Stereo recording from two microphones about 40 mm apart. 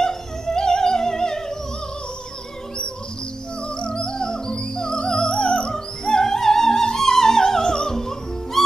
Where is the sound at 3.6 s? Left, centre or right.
Left.